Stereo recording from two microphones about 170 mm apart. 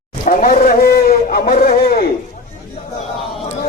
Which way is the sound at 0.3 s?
55° left (ahead or behind).